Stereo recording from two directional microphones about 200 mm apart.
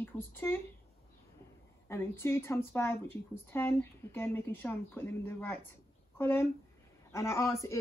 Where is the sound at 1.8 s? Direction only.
10° left (ahead or behind).